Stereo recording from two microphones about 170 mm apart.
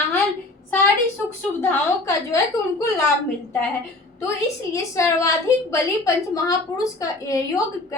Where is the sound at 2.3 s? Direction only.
20° left (ahead or behind).